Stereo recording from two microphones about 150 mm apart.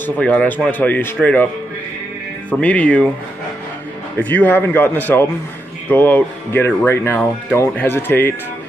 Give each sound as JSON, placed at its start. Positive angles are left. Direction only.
{"t": 0.0, "sound": "speech", "side_deg": 10}
{"t": 2.5, "sound": "speech", "side_deg": 10}
{"t": 4.2, "sound": "speech", "side_deg": 10}